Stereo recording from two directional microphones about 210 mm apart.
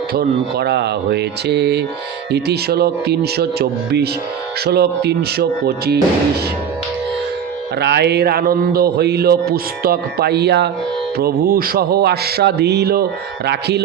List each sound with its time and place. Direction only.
0.1 s a man's voice: 50° right (ahead or behind)
7.8 s a man's voice: 50° right (ahead or behind)